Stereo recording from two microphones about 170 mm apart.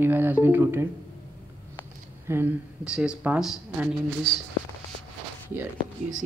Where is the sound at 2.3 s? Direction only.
15° right (ahead or behind).